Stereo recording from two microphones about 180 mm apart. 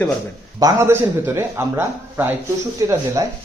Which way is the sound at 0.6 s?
20° right (ahead or behind).